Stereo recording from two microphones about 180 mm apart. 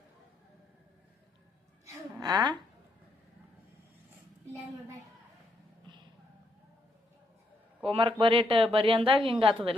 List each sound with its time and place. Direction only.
2.2 s a woman's voice: 25° right (ahead or behind)
5.8 s vehicle: 25° right (ahead or behind)
7.9 s speech: 30° right (ahead or behind)